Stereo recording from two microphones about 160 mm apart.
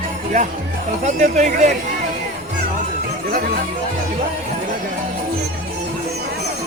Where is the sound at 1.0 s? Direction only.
50° right (ahead or behind).